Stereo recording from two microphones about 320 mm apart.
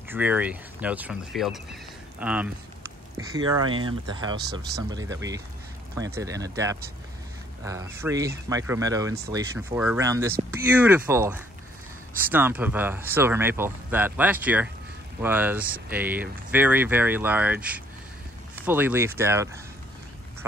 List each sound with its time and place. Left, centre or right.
0.1 s speech: centre
4.4 s speech: right
4.8 s speech: centre